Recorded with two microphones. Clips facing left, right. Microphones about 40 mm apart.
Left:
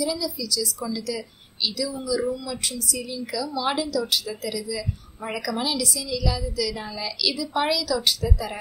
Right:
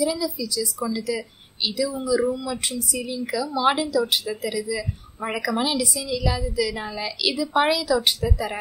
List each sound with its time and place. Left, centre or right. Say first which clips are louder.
0.0 s speech: right 3 dB; right